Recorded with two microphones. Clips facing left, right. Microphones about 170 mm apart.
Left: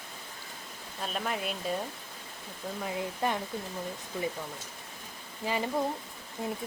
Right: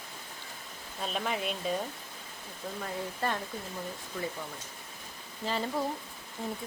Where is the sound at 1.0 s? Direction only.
Centre (ahead or behind).